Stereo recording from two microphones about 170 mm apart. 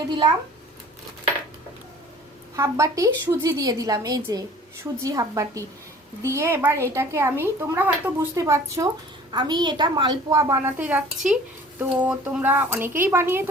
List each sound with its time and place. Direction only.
0.1 s a woman's voice: 25° right (ahead or behind)
2.6 s a woman's voice: 15° right (ahead or behind)